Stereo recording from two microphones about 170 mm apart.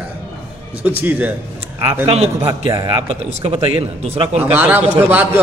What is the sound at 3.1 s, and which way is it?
A man's voice, 40° right (ahead or behind).